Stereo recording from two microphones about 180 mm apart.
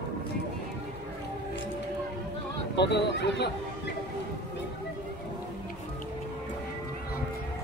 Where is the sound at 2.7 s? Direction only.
70° left (ahead or behind).